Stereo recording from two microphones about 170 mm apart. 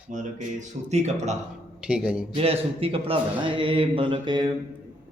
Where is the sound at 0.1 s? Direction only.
45° right (ahead or behind).